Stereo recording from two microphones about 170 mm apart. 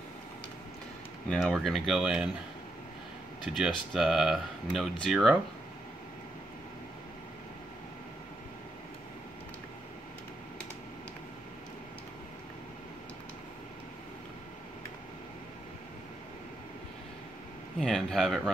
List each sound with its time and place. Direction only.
1.3 s speech: centre (ahead or behind)
3.4 s speech: centre (ahead or behind)
17.7 s a sound: centre (ahead or behind)